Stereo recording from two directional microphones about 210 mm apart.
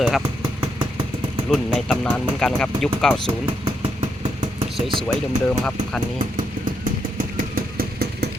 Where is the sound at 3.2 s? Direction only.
25° right (ahead or behind).